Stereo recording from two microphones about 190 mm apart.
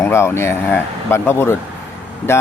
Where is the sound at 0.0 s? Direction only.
15° left (ahead or behind).